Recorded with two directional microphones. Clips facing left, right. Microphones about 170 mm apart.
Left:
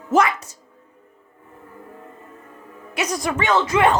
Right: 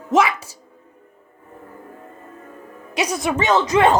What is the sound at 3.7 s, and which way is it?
Speech, 30° right (ahead or behind).